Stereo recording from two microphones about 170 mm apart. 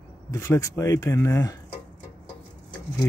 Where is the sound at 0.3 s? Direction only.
20° left (ahead or behind).